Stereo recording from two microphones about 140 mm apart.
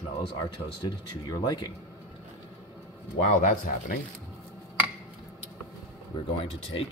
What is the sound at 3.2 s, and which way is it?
Speech, 70° left (ahead or behind).